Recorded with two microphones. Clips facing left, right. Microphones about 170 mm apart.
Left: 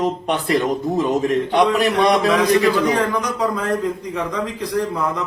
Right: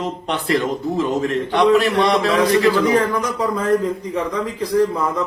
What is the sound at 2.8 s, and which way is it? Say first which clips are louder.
Speech: right 2 dB; centre (ahead or behind).